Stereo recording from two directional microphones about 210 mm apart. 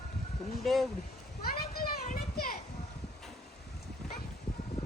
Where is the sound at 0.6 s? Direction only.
Centre (ahead or behind).